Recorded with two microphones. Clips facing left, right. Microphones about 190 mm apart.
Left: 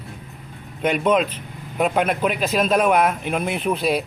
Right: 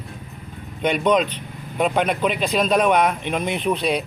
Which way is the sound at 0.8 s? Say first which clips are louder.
Even; 5° left (ahead or behind).